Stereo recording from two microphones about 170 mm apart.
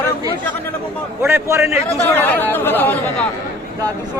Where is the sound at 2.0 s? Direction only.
10° left (ahead or behind).